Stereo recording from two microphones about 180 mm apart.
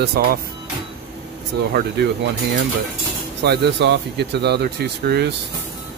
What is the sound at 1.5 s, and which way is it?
Speech, 65° right (ahead or behind).